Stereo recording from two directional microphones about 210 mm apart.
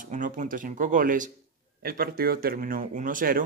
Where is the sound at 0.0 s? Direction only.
40° right (ahead or behind).